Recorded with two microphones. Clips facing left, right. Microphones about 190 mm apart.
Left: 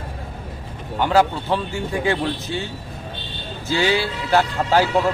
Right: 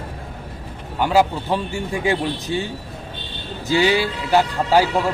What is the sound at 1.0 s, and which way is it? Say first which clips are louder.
A man's voice: even; 10° right (ahead or behind).